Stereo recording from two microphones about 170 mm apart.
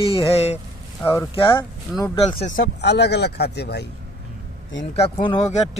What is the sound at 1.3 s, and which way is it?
Speech, 30° left (ahead or behind).